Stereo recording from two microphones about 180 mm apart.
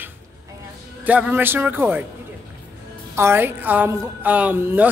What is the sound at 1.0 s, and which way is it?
A woman's voice, 10° right (ahead or behind).